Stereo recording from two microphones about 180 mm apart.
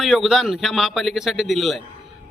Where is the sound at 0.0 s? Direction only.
Centre (ahead or behind).